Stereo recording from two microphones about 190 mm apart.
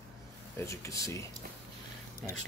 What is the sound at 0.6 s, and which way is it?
Speech, 15° left (ahead or behind).